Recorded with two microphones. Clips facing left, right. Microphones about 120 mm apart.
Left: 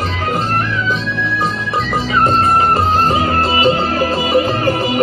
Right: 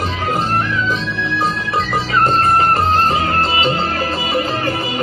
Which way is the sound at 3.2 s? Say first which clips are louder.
Left 2 dB; 20° left (ahead or behind).